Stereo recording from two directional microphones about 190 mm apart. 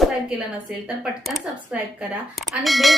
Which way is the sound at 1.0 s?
5° right (ahead or behind).